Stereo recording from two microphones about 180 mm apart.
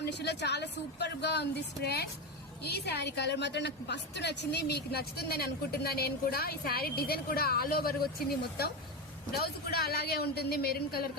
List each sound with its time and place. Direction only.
0.0 s a woman's voice: 70° left (ahead or behind)
9.3 s a woman's voice: 60° left (ahead or behind)